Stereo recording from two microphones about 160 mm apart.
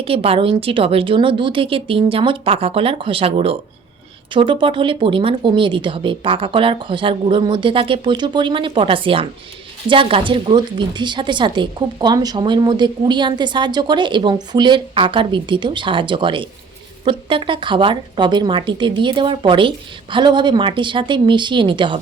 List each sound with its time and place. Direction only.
0.0 s speech: 35° right (ahead or behind)